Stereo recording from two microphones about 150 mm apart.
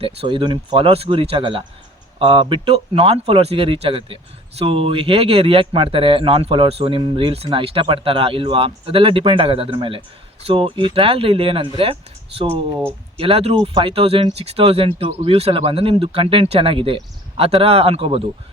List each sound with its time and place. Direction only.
0.0 s speech: 35° right (ahead or behind)
13.1 s speech: 40° right (ahead or behind)